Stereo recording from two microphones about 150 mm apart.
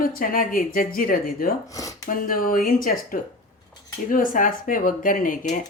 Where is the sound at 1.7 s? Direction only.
20° left (ahead or behind).